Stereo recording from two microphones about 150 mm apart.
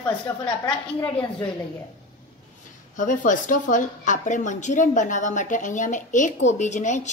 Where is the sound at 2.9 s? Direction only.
60° left (ahead or behind).